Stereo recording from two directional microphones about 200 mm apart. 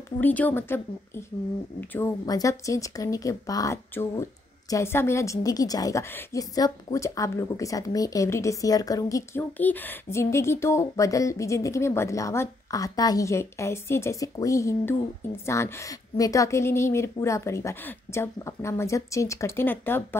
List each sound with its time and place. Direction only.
0.2 s speech: 10° left (ahead or behind)